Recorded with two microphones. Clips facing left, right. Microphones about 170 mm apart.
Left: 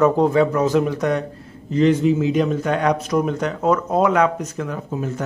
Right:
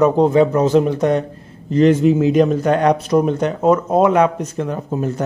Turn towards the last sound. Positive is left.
turn(degrees=-35)  # may be behind; listen again after turning